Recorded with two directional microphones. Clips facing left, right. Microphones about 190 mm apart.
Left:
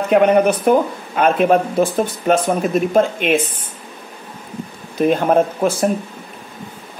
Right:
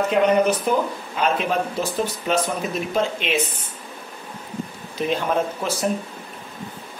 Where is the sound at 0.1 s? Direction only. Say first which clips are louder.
Left 7 dB; 55° left (ahead or behind).